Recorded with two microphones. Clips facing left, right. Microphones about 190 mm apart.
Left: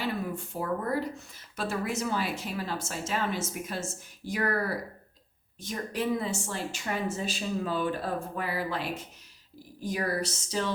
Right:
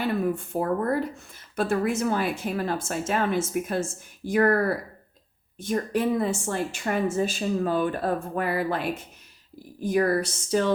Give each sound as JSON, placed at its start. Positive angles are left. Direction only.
{"t": 0.0, "sound": "a woman's voice", "side_deg": -55}